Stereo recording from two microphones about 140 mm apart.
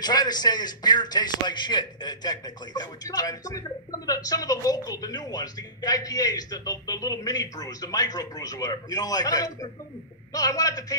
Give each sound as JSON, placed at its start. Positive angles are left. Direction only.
{"t": 0.0, "sound": "a man's voice", "side_deg": 30}